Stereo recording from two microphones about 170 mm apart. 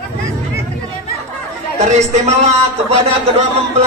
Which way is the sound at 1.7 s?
40° right (ahead or behind).